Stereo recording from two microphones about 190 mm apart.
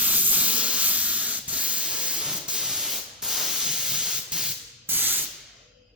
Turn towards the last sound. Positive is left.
turn(degrees=-10)  # may be behind; listen again after turning